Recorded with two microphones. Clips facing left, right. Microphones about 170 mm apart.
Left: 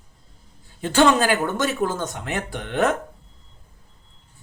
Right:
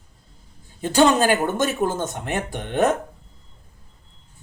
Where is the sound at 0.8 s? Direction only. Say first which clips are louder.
Right 1 dB; 45° right (ahead or behind).